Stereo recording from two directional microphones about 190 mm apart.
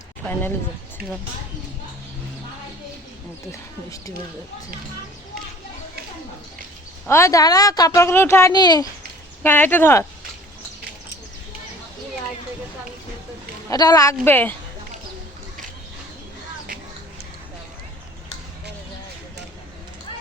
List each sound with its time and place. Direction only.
7.1 s a woman's voice: 15° left (ahead or behind)
9.4 s a woman's voice: 10° left (ahead or behind)
13.7 s a woman's voice: 20° left (ahead or behind)